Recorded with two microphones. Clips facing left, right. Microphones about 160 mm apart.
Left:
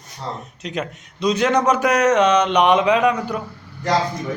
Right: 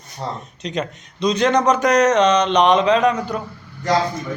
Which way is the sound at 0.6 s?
5° left (ahead or behind).